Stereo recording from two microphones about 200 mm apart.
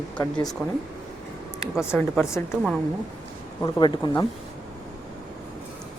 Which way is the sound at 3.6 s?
20° left (ahead or behind).